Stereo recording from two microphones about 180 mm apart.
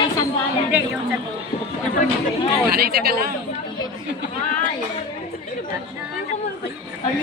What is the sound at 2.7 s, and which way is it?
Speech, 60° right (ahead or behind).